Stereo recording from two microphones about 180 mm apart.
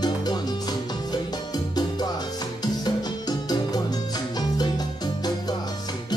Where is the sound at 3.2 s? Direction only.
20° left (ahead or behind).